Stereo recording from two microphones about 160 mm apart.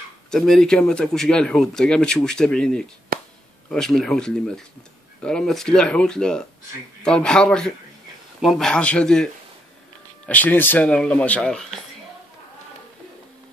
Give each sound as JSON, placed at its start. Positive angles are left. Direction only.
{"t": 0.3, "sound": "speech", "side_deg": 5}
{"t": 3.1, "sound": "chop", "side_deg": -65}
{"t": 3.7, "sound": "speech", "side_deg": 5}